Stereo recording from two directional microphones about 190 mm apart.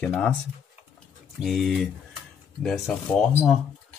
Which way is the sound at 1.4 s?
Centre (ahead or behind).